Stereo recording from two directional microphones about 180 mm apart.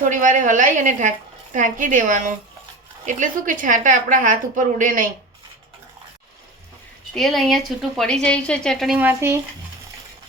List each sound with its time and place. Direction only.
0.0 s a woman's voice: 45° right (ahead or behind)
7.1 s a woman's voice: centre (ahead or behind)
9.0 s speech: 10° right (ahead or behind)